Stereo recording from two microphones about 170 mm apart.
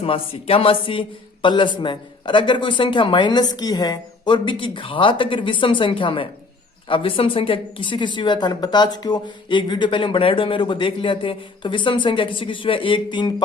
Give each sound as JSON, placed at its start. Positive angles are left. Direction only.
{"t": 0.0, "sound": "speech", "side_deg": 35}